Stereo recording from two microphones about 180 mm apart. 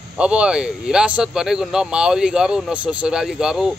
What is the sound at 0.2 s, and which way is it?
Speech, 5° right (ahead or behind).